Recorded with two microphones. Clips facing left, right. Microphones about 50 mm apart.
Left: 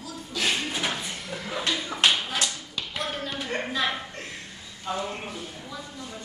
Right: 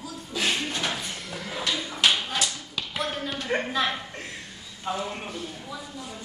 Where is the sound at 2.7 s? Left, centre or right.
Centre.